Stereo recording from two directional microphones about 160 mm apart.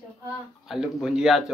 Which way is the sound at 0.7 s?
Centre (ahead or behind).